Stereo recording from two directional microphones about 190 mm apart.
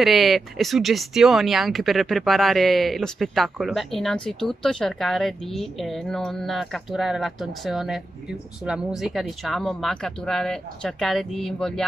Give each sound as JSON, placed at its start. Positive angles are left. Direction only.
{"t": 0.0, "sound": "speech", "side_deg": 0}